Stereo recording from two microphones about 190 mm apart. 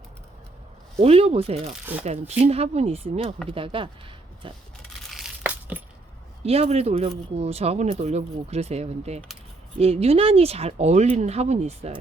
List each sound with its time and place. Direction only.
0.9 s speech: 35° right (ahead or behind)
1.7 s speech: 5° right (ahead or behind)
2.4 s speech: 35° right (ahead or behind)
5.1 s tearing: 5° right (ahead or behind)
6.4 s speech: 35° right (ahead or behind)